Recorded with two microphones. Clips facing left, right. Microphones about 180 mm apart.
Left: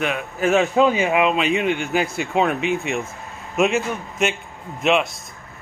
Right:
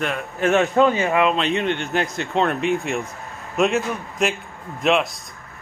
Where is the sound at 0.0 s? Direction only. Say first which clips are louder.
Left 1 dB; 5° left (ahead or behind).